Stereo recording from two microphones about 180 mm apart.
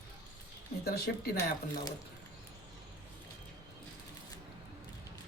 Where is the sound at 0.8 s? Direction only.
60° left (ahead or behind).